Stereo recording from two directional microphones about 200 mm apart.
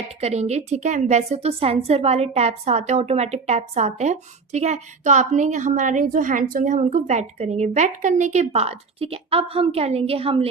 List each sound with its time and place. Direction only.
0.2 s a woman's voice: 30° right (ahead or behind)